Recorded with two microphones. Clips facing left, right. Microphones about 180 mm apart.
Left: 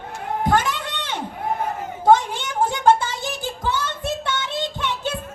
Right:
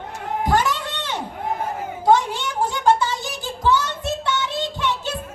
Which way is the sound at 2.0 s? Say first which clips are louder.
Left 1 dB; 50° left (ahead or behind).